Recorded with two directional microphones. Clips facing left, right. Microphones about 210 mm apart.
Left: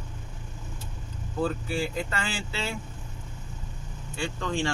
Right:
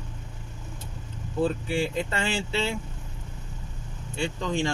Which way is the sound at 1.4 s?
25° right (ahead or behind).